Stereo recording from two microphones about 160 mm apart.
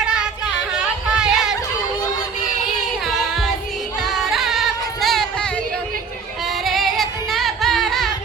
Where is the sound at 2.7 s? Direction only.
Centre (ahead or behind).